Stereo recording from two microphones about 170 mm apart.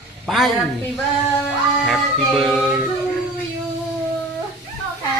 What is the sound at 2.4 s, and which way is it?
Music, centre (ahead or behind).